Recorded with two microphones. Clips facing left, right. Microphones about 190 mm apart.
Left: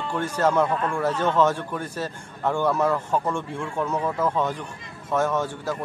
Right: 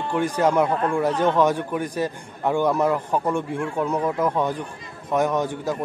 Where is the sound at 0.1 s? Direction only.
15° right (ahead or behind).